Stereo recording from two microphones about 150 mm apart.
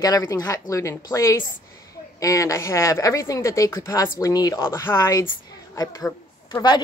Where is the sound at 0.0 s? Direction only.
25° left (ahead or behind).